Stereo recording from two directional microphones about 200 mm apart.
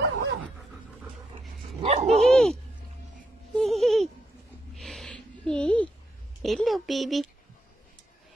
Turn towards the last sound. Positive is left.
turn(degrees=0)  # may be behind; listen again after turning